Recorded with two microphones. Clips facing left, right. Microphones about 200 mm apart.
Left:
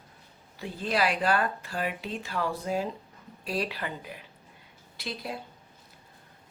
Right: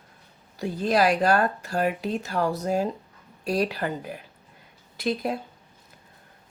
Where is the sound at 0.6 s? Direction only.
40° right (ahead or behind).